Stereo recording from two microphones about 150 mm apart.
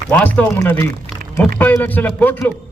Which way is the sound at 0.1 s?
10° left (ahead or behind).